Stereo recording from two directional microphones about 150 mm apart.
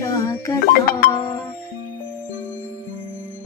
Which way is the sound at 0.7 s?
80° left.